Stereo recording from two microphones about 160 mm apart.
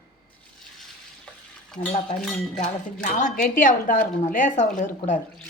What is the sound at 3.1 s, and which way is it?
A woman's voice, 55° left (ahead or behind).